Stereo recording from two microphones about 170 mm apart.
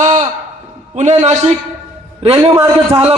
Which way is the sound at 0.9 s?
45° right (ahead or behind).